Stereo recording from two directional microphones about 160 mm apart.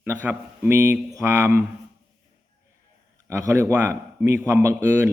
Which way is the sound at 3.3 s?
15° right (ahead or behind).